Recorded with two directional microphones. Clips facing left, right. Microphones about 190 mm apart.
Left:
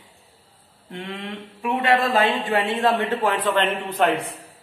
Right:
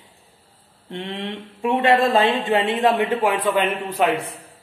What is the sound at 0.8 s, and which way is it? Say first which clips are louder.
Speech: right 3 dB; 25° right (ahead or behind).